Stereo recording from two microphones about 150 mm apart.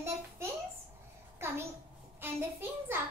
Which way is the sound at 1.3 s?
15° right (ahead or behind).